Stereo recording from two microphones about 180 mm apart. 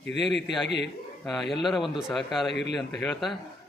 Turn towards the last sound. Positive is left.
turn(degrees=0)  # may be behind; listen again after turning